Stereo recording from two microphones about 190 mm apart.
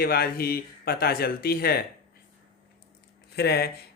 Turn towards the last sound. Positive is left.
turn(degrees=55)  # may be behind; listen again after turning